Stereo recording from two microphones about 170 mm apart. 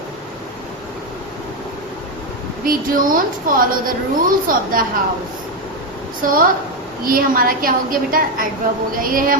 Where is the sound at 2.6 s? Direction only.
55° right (ahead or behind).